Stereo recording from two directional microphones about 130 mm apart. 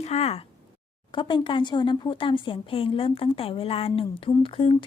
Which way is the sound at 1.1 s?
40° left (ahead or behind).